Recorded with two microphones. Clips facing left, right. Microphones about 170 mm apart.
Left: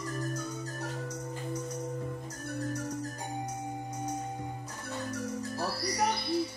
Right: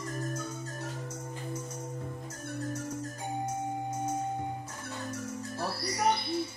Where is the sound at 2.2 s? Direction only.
25° right (ahead or behind).